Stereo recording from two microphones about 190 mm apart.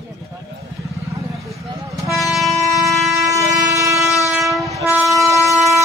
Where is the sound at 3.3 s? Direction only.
15° right (ahead or behind).